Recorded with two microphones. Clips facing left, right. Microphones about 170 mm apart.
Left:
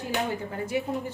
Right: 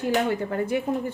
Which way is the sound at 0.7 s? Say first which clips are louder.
Even; 55° right (ahead or behind).